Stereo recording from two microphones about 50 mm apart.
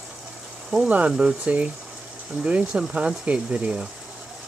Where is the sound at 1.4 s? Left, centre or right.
Right.